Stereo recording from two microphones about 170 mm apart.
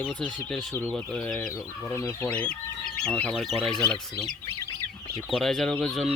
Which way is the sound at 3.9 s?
Centre (ahead or behind).